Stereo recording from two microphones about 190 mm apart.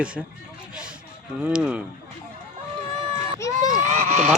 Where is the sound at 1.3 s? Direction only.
5° right (ahead or behind).